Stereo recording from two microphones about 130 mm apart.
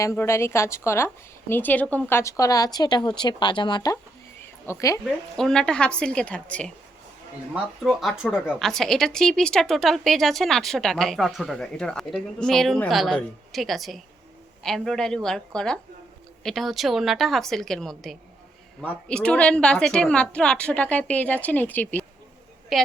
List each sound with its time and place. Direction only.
0.0 s a woman's voice: 20° left (ahead or behind)
4.6 s a woman's voice: 25° left (ahead or behind)
5.4 s a woman's voice: 5° left (ahead or behind)
7.5 s a woman's voice: 5° right (ahead or behind); by 22.0 s 15° left (ahead or behind)
22.7 s speech: centre (ahead or behind)